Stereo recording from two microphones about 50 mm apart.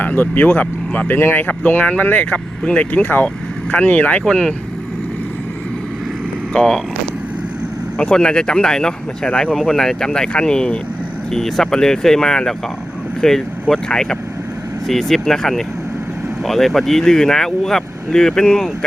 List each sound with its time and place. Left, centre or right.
0.0 s speech: left
4.3 s speech: centre
6.5 s speech: centre
8.1 s speech: centre